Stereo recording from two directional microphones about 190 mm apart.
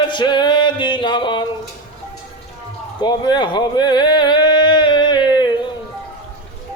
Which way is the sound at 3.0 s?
20° left (ahead or behind).